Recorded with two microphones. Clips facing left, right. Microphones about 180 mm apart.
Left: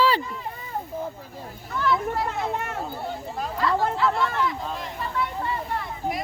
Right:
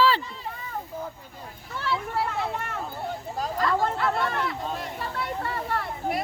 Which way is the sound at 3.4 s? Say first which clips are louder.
Left 1 dB; 45° right (ahead or behind).